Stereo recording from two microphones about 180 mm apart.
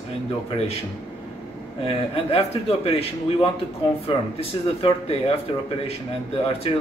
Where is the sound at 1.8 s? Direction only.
35° left (ahead or behind).